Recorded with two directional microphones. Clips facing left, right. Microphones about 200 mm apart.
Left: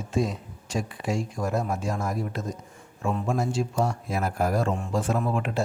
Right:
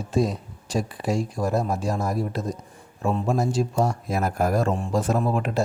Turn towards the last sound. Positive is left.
turn(degrees=-40)  # may be behind; listen again after turning